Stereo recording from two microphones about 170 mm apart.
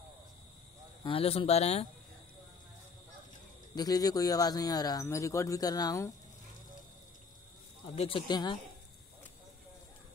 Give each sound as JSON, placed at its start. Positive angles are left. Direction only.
{"t": 1.0, "sound": "speech", "side_deg": 35}
{"t": 3.7, "sound": "speech", "side_deg": 20}
{"t": 7.9, "sound": "speech", "side_deg": 35}
{"t": 8.3, "sound": "speech", "side_deg": 25}